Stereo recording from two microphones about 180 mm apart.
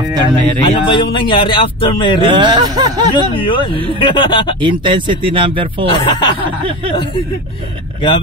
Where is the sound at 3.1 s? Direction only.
30° left (ahead or behind).